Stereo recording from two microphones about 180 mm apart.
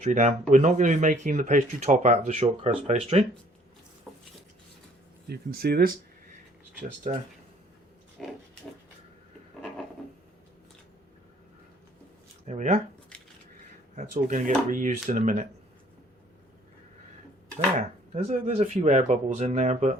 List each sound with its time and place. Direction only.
0.0 s speech: 40° right (ahead or behind)
5.3 s speech: 60° right (ahead or behind)
7.1 s speech: 40° right (ahead or behind)
8.2 s pig: centre (ahead or behind)
12.5 s speech: 40° right (ahead or behind)
13.9 s speech: 40° right (ahead or behind)
17.7 s speech: 40° right (ahead or behind)